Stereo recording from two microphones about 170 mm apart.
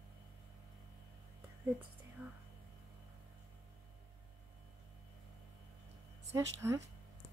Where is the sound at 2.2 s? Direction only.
10° right (ahead or behind).